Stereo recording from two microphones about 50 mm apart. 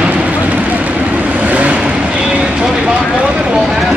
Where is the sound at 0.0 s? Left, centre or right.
Right.